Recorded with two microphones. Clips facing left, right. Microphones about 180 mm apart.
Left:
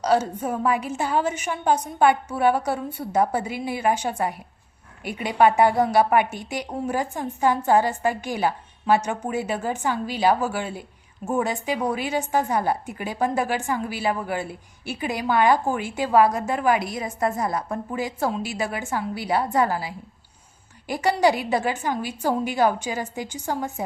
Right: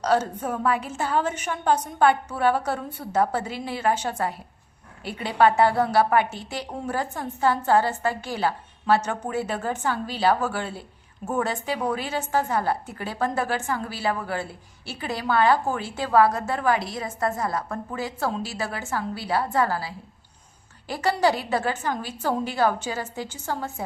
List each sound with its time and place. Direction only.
0.0 s a woman's voice: 10° left (ahead or behind)